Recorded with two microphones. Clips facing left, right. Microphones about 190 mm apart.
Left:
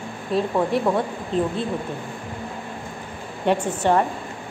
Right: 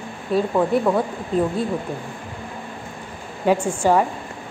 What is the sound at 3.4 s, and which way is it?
Speech, 10° right (ahead or behind).